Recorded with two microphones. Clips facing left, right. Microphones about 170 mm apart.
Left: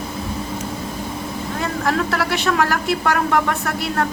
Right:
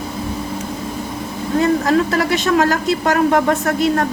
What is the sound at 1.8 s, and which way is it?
Speech, 20° right (ahead or behind).